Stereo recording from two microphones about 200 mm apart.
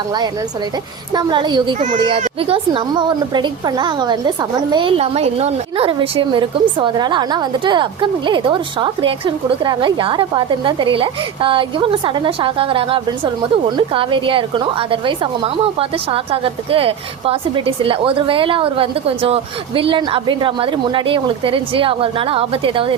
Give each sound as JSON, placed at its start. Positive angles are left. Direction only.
{"t": 1.1, "sound": "a woman's voice", "side_deg": -20}